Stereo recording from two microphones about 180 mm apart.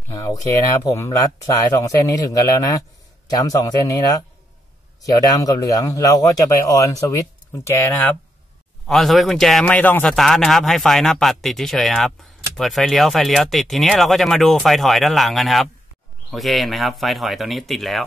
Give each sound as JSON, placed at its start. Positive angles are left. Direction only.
{"t": 0.1, "sound": "speech", "side_deg": 20}
{"t": 8.8, "sound": "a man's voice", "side_deg": 0}